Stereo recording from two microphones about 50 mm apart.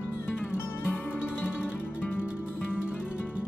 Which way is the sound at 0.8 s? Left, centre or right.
Left.